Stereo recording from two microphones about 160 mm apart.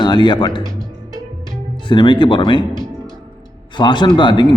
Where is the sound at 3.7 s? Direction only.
30° left (ahead or behind).